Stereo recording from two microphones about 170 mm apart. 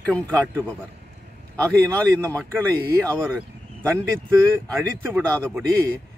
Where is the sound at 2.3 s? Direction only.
10° left (ahead or behind).